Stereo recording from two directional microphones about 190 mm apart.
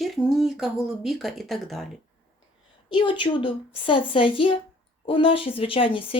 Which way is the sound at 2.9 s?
25° left (ahead or behind).